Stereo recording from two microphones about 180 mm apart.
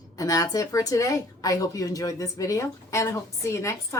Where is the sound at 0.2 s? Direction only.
20° left (ahead or behind).